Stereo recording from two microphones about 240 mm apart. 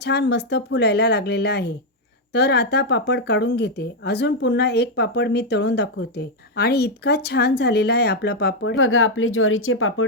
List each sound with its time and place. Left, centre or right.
0.0 s speech: left